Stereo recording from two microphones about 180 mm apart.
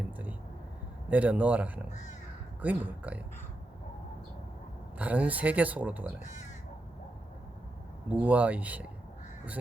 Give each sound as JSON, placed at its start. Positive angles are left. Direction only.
{"t": 1.1, "sound": "speech", "side_deg": -10}
{"t": 4.9, "sound": "speech", "side_deg": -10}
{"t": 6.1, "sound": "speech", "side_deg": 40}
{"t": 8.1, "sound": "speech", "side_deg": -10}